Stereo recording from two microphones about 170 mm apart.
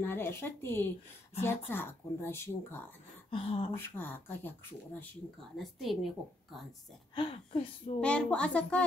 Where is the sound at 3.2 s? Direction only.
35° left (ahead or behind).